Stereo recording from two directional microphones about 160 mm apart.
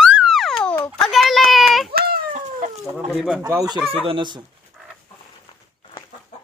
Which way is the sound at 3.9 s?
30° right (ahead or behind).